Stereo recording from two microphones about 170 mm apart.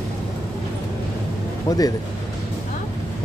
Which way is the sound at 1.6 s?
20° left (ahead or behind).